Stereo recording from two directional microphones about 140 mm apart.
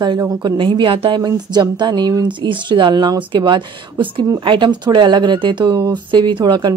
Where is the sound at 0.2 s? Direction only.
30° right (ahead or behind).